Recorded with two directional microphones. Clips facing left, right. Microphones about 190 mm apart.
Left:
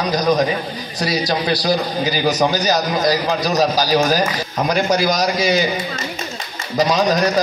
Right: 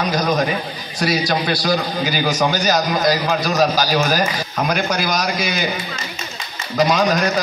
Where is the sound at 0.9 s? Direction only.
35° left (ahead or behind).